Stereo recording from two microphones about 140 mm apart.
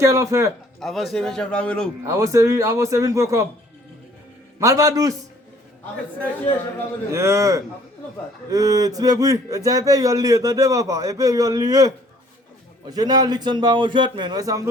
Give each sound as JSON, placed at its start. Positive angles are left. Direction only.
{"t": 0.0, "sound": "a man's voice", "side_deg": -20}
{"t": 0.8, "sound": "a man's voice", "side_deg": 0}
{"t": 2.0, "sound": "a man's voice", "side_deg": -20}
{"t": 4.6, "sound": "a man's voice", "side_deg": -25}
{"t": 7.1, "sound": "a man's voice", "side_deg": -20}